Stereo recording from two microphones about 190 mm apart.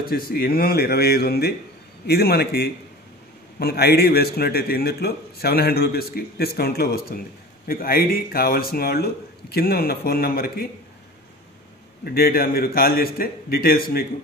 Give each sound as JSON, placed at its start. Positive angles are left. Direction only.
{"t": 0.0, "sound": "a man's voice", "side_deg": 50}
{"t": 12.0, "sound": "speech", "side_deg": 55}